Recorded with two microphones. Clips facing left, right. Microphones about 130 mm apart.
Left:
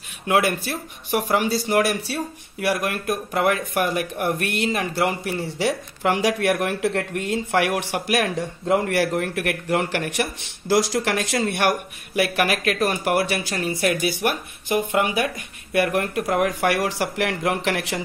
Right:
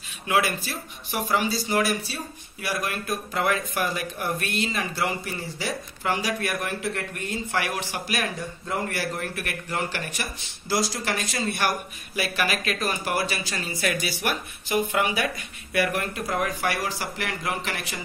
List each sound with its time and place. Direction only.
0.3 s speech: 55° left (ahead or behind); by 18.0 s 85° left